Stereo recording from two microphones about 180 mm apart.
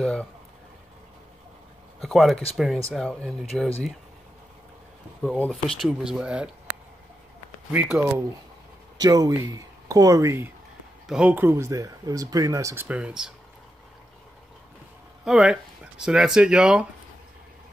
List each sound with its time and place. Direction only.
0.0 s speech: 5° left (ahead or behind)
2.0 s speech: centre (ahead or behind)
5.5 s speech: centre (ahead or behind)
7.7 s speech: 10° right (ahead or behind)
8.9 s speech: 20° right (ahead or behind); by 13.3 s 5° right (ahead or behind)
15.2 s speech: 5° right (ahead or behind)